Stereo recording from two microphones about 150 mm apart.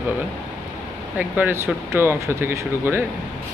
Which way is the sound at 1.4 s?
15° right (ahead or behind).